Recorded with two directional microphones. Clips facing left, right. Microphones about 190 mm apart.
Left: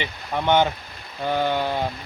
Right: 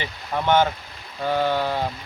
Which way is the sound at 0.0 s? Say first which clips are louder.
Even; 20° left (ahead or behind).